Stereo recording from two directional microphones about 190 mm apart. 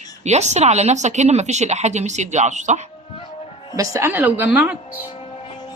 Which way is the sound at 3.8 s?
15° right (ahead or behind).